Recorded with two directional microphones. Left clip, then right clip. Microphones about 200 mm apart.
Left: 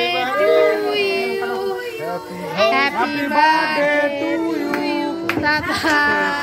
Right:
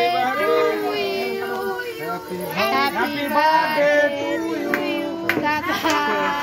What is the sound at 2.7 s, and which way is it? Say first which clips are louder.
Music: left 3 dB; 15° left (ahead or behind).